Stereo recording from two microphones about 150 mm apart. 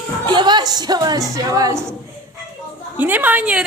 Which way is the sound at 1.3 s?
25° right (ahead or behind).